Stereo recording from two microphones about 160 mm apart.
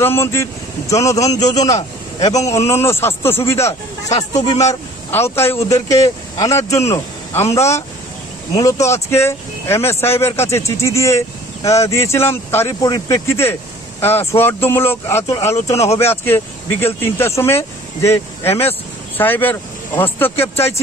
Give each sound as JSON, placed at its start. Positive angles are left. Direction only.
{"t": 0.0, "sound": "a man's voice", "side_deg": 15}